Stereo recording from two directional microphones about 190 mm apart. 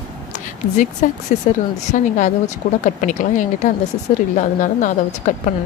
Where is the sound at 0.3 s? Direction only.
40° left (ahead or behind).